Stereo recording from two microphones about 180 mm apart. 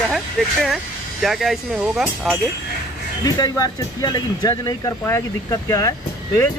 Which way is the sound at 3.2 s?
20° left (ahead or behind).